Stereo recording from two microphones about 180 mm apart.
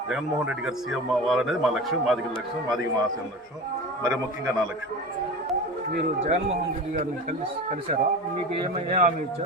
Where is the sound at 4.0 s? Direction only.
15° right (ahead or behind).